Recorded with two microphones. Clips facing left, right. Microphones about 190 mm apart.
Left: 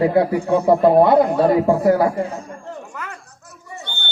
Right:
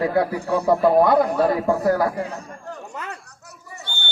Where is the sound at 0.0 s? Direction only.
25° left (ahead or behind).